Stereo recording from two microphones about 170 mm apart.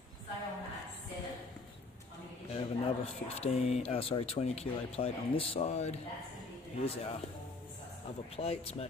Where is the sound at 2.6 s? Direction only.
35° left (ahead or behind).